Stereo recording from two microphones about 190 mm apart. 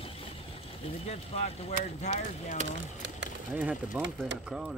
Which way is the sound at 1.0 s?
35° left (ahead or behind).